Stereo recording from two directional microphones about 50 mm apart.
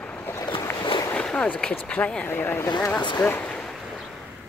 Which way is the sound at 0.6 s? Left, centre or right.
Left.